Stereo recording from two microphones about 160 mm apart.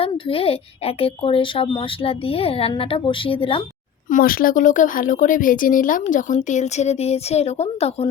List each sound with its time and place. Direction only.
0.0 s a woman's voice: 35° left (ahead or behind)
4.1 s speech: 65° left (ahead or behind); by 8.1 s 40° left (ahead or behind)